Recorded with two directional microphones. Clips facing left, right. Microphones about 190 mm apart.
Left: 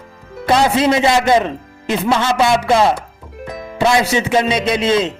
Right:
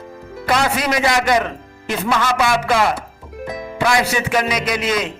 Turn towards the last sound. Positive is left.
turn(degrees=25)  # may be behind; listen again after turning